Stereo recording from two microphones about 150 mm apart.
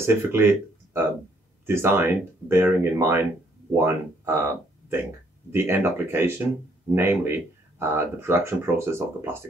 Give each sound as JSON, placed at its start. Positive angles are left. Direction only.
{"t": 0.0, "sound": "speech", "side_deg": -15}